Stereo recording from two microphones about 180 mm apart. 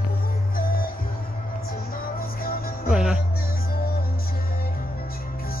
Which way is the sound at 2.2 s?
55° left (ahead or behind).